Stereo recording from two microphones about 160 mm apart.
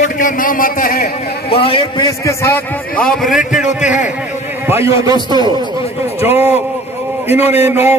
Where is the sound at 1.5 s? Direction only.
35° left (ahead or behind); by 2.6 s 20° left (ahead or behind).